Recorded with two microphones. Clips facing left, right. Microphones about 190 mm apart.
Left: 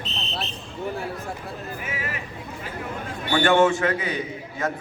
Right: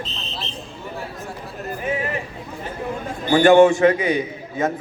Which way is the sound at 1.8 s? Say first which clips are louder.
Right 11 dB; 30° right (ahead or behind).